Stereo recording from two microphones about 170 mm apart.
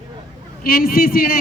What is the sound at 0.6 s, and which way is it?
Speech, 60° left (ahead or behind).